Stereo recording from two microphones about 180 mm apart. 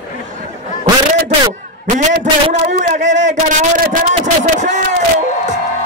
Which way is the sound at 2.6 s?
45° right (ahead or behind).